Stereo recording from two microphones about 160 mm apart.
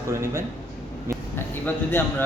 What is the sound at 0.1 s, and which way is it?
Speech, 20° right (ahead or behind).